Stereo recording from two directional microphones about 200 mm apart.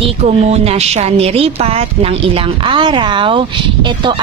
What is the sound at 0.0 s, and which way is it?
A woman's voice, 30° right (ahead or behind).